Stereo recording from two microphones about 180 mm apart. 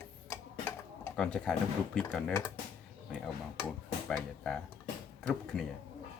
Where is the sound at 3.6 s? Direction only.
5° left (ahead or behind).